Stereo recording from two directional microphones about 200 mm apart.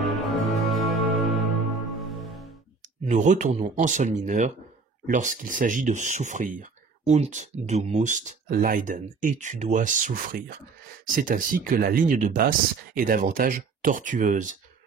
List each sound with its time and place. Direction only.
0.1 s music: centre (ahead or behind)
3.1 s speech: 35° right (ahead or behind)